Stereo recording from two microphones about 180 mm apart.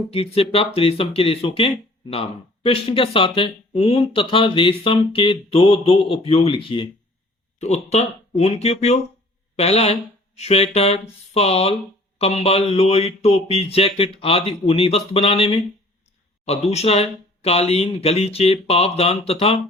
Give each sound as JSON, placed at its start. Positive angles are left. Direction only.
{"t": 0.1, "sound": "speech", "side_deg": 35}